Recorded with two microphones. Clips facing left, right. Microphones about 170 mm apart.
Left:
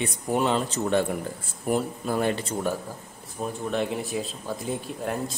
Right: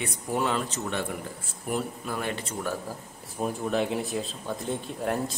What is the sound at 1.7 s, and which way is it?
Speech, 35° left (ahead or behind).